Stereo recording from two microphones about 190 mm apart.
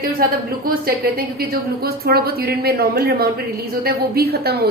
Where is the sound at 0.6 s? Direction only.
50° right (ahead or behind).